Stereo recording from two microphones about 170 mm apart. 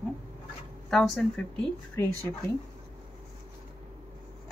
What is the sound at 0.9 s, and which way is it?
Speech, centre (ahead or behind).